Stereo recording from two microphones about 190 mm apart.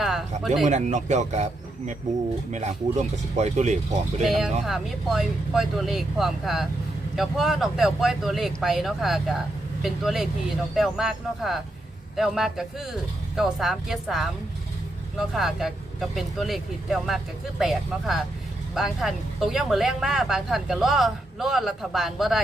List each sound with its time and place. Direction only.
0.0 s speech: centre (ahead or behind)
0.7 s speech: 40° right (ahead or behind)
2.5 s speech: 35° right (ahead or behind)
4.2 s speech: centre (ahead or behind)
15.3 s speech: centre (ahead or behind)